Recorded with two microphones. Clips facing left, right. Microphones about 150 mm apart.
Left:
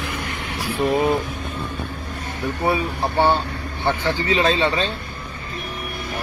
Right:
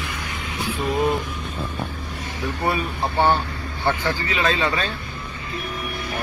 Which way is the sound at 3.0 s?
15° left (ahead or behind).